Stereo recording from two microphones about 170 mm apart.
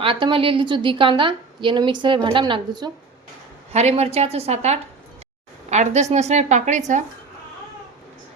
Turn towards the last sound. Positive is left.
turn(degrees=-45)  # may be behind; listen again after turning